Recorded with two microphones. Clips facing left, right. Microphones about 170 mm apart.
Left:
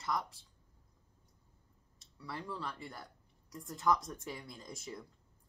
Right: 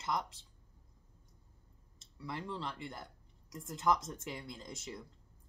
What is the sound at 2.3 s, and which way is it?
Speech, 20° right (ahead or behind).